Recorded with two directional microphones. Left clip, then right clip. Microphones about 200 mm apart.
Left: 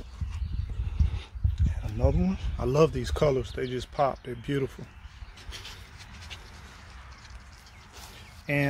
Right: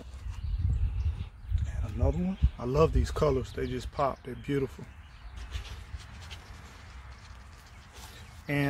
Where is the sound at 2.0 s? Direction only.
40° left (ahead or behind); by 4.7 s 25° left (ahead or behind).